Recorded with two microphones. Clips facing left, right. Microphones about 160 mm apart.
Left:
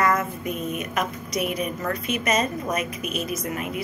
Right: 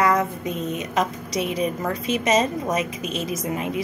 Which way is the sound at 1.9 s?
90° right.